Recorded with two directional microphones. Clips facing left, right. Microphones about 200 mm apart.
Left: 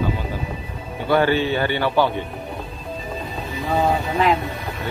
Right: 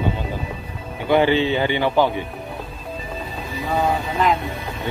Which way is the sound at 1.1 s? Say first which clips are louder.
Right 1 dB; 15° right (ahead or behind).